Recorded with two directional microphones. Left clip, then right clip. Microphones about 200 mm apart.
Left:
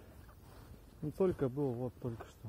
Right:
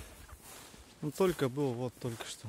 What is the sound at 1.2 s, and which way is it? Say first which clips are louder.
Speech: right 3 dB; 20° right (ahead or behind).